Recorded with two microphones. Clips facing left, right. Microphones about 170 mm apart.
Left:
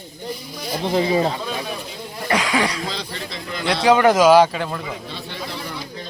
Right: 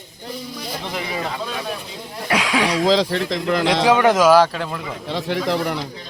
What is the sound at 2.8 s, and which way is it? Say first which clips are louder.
Speech: right 12 dB; 80° right.